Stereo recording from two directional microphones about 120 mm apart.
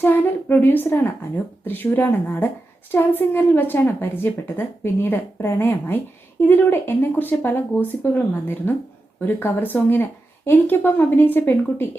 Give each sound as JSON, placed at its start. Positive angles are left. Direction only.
{"t": 0.0, "sound": "a woman's voice", "side_deg": 15}